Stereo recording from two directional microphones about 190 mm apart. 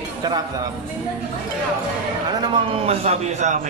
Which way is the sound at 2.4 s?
30° right (ahead or behind).